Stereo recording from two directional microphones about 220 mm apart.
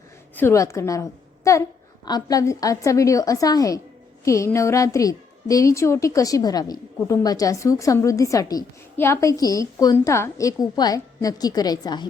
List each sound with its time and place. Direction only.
0.3 s a woman's voice: 10° left (ahead or behind)